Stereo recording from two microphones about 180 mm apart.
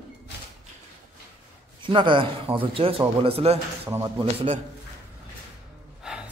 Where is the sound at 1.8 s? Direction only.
25° right (ahead or behind).